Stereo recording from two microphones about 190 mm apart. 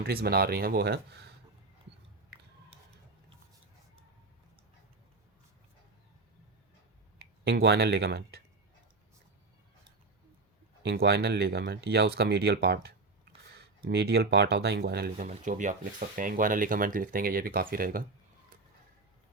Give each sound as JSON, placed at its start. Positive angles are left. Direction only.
{"t": 0.0, "sound": "speech", "side_deg": -50}
{"t": 7.2, "sound": "speech", "side_deg": -60}
{"t": 10.8, "sound": "speech", "side_deg": -60}
{"t": 15.3, "sound": "speech", "side_deg": -40}